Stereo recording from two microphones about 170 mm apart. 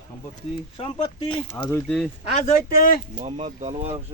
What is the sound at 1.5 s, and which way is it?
Speech, 15° left (ahead or behind).